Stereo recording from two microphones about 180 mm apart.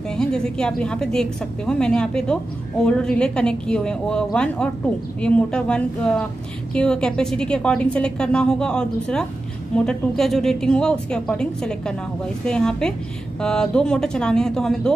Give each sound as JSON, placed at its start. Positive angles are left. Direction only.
{"t": 0.1, "sound": "a woman's voice", "side_deg": 5}